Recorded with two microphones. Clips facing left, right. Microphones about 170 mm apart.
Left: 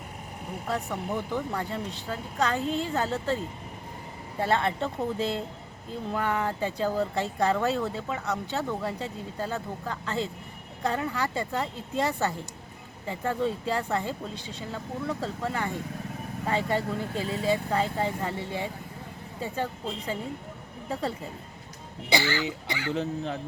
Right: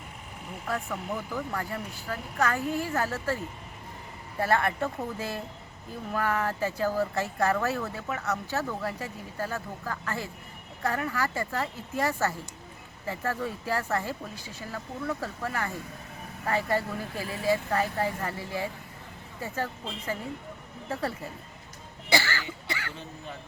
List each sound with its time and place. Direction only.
0.9 s speech: centre (ahead or behind)
1.5 s speech: 25° left (ahead or behind)
22.1 s cough: 15° left (ahead or behind)
23.0 s speech: 90° left